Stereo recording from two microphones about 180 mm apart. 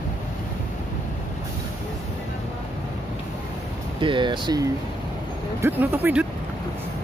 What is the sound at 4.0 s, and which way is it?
Speech, 25° right (ahead or behind).